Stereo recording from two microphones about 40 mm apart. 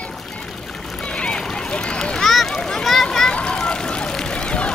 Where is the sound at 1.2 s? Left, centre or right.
Left.